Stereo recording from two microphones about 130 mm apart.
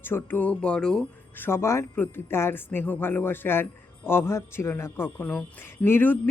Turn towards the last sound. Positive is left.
turn(degrees=15)  # may be behind; listen again after turning